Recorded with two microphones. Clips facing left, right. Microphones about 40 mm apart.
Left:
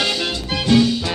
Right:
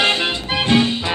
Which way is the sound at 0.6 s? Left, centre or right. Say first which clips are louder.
Left 1 dB; right.